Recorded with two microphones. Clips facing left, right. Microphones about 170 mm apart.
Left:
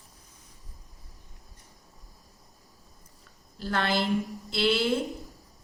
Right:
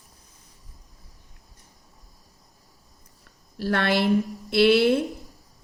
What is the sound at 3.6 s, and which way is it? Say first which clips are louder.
A woman's voice: right 5 dB; 65° right (ahead or behind).